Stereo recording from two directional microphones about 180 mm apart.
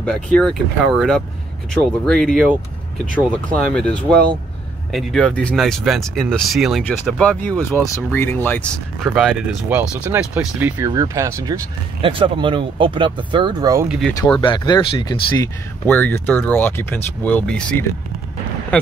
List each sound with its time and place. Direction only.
0.0 s speech: 5° left (ahead or behind)
9.7 s speech: 10° right (ahead or behind)
12.0 s speech: 30° right (ahead or behind)
14.4 s speech: 25° left (ahead or behind); by 17.7 s 5° left (ahead or behind)